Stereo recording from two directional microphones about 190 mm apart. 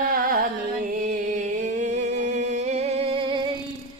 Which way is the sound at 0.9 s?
40° right (ahead or behind).